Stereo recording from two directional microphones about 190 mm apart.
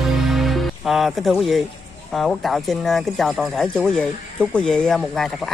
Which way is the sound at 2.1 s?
Centre (ahead or behind).